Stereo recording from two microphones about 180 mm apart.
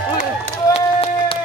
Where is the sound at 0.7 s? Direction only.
30° left (ahead or behind).